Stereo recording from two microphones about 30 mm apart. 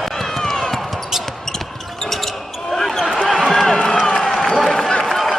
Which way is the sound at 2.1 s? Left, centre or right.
Centre.